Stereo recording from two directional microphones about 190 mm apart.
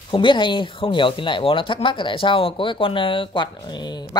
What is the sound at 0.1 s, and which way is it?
Speech, 25° left (ahead or behind).